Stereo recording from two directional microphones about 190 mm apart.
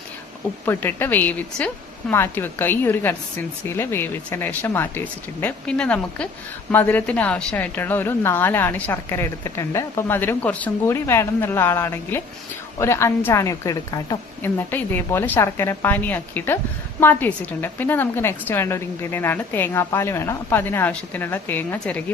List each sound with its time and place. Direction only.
0.6 s a woman's voice: 10° left (ahead or behind)